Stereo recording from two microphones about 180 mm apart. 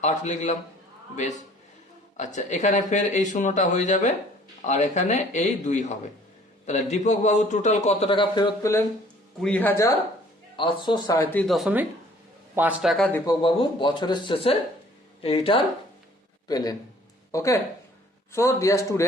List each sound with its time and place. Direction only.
0.0 s a man's voice: 40° left (ahead or behind)
2.1 s a man's voice: 40° left (ahead or behind); by 8.8 s 20° left (ahead or behind)
9.4 s a man's voice: 10° left (ahead or behind)
10.6 s speech: 25° left (ahead or behind)
11.4 s speech: centre (ahead or behind)
13.1 s a man's voice: 25° left (ahead or behind)
16.5 s a man's voice: 20° left (ahead or behind)